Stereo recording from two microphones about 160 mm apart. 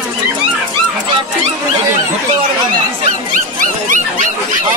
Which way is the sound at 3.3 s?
55° right (ahead or behind).